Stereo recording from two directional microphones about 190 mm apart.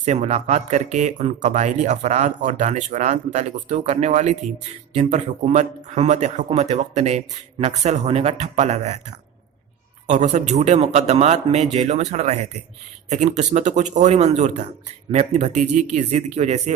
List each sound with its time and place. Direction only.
0.0 s speech: 35° right (ahead or behind)